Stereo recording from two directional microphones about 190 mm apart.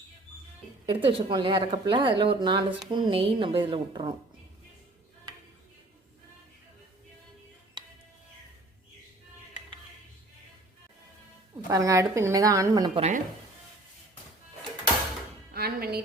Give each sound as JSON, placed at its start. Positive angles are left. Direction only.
{"t": 0.9, "sound": "speech", "side_deg": -25}
{"t": 11.7, "sound": "a woman's voice", "side_deg": -15}
{"t": 13.0, "sound": "speech", "side_deg": -40}
{"t": 15.5, "sound": "speech", "side_deg": -55}